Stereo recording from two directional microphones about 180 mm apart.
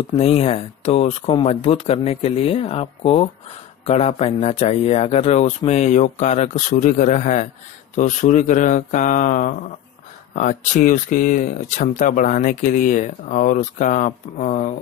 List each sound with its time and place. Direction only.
0.2 s speech: 35° left (ahead or behind)